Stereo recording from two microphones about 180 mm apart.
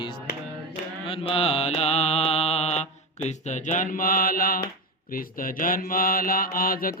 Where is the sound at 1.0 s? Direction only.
30° left (ahead or behind).